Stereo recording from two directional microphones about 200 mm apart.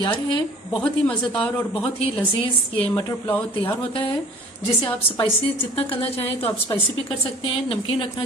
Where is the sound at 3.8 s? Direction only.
25° left (ahead or behind).